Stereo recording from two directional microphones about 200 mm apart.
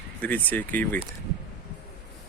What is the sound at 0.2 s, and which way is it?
Speech, 10° left (ahead or behind).